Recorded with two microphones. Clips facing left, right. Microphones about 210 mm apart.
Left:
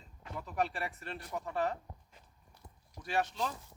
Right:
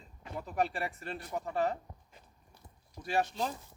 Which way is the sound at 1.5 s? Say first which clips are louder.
Right 2 dB; 5° right (ahead or behind).